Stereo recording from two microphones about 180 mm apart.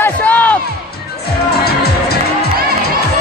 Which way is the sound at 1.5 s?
60° left (ahead or behind).